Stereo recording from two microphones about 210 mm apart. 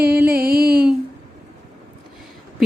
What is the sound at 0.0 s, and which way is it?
Music, 45° right (ahead or behind).